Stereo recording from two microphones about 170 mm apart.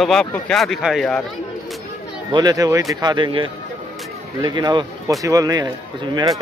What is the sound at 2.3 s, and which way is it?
A man's voice, 25° right (ahead or behind).